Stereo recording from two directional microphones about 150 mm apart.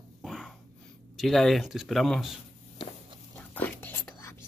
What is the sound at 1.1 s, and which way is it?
Speech, centre (ahead or behind).